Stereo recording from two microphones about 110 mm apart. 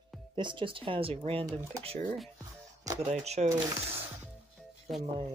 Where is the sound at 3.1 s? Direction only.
75° right (ahead or behind).